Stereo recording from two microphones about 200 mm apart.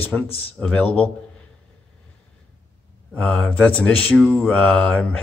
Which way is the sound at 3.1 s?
5° left (ahead or behind).